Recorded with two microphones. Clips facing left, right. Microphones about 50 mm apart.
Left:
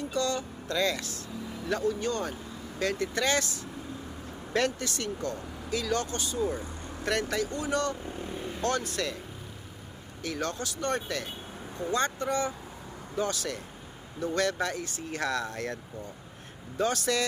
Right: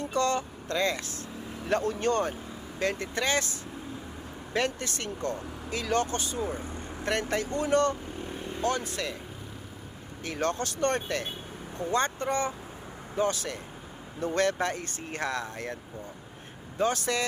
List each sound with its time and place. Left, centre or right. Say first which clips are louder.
0.1 s speech: right 4 dB; right
1.8 s speech: right 1 dB; right
2.7 s speech: even; right
4.8 s speech: even; right
8.4 s vehicle: right 1 dB; centre
8.7 s speech: left 1 dB; centre
10.2 s speech: right 3 dB; right